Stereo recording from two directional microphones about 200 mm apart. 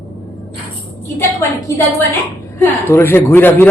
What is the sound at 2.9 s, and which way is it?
Speech, 10° left (ahead or behind).